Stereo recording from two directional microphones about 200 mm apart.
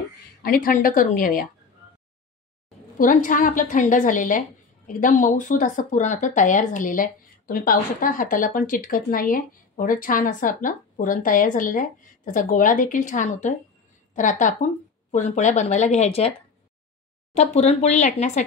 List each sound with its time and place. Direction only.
0.4 s a woman's voice: 45° left (ahead or behind)
3.0 s a woman's voice: 40° left (ahead or behind)